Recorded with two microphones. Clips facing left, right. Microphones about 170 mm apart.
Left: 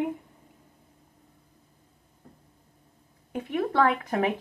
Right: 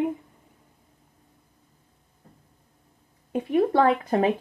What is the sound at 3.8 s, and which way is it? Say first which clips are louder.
Speech: right 3 dB; 25° right (ahead or behind).